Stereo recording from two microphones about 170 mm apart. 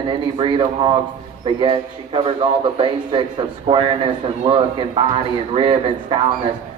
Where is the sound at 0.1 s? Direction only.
30° right (ahead or behind).